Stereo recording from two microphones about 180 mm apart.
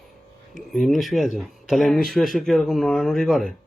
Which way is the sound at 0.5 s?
Centre (ahead or behind).